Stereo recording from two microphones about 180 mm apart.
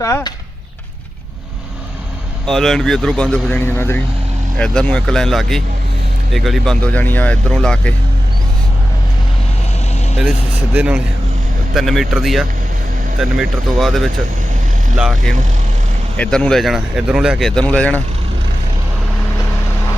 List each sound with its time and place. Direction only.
0.0 s speech: 15° left (ahead or behind)
2.5 s speech: centre (ahead or behind)
10.8 s speech: 5° right (ahead or behind)